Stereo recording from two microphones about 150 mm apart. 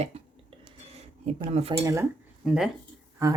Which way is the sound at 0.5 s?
35° right (ahead or behind).